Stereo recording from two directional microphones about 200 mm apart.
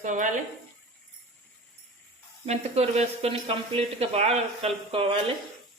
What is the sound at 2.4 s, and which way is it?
Speech, 30° right (ahead or behind).